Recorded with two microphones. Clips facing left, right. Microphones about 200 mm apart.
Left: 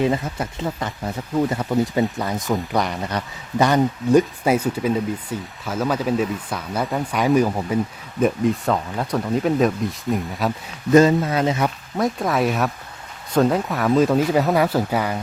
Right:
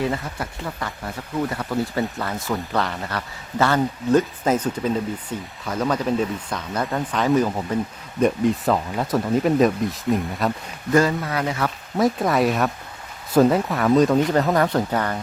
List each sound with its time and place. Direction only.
0.0 s speech: 20° left (ahead or behind)
8.2 s speech: centre (ahead or behind)
10.9 s speech: 20° left (ahead or behind)
11.9 s speech: centre (ahead or behind)